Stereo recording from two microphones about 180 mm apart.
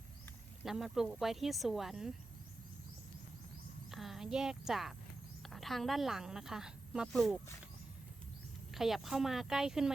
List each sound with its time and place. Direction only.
0.6 s speech: centre (ahead or behind)
3.9 s a woman's voice: centre (ahead or behind)
8.7 s speech: centre (ahead or behind)